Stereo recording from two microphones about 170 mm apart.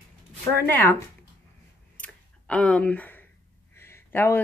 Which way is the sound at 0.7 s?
10° left (ahead or behind).